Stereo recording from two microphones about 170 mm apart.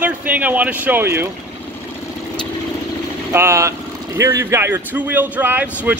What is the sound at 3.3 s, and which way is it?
Speech, 15° right (ahead or behind).